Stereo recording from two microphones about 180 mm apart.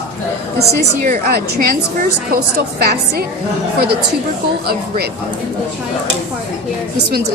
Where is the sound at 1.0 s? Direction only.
55° right (ahead or behind).